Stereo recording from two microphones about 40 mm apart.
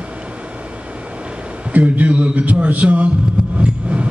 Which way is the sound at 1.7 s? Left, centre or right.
Right.